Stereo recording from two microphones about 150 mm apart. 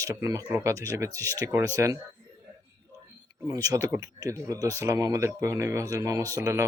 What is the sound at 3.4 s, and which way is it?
A man's voice, 25° right (ahead or behind).